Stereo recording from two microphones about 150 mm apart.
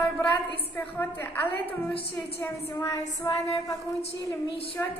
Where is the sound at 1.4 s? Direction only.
35° left (ahead or behind).